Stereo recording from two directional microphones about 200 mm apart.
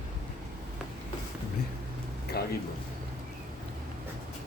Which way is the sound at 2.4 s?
50° left (ahead or behind).